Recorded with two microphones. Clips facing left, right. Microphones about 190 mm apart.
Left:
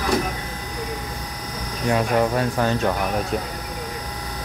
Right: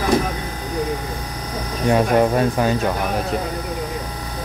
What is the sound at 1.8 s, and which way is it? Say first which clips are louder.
Speech: right 4 dB; 30° right (ahead or behind).